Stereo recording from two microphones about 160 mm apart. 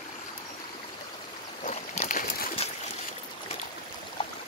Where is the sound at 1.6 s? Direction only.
50° left (ahead or behind).